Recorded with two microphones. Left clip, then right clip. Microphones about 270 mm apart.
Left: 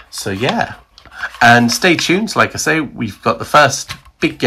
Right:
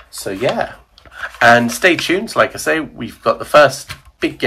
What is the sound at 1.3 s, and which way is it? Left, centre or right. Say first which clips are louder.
Speech: left 1 dB; centre.